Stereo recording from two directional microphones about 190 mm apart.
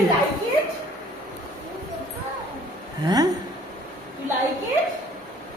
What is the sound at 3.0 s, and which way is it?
Speech, 20° right (ahead or behind).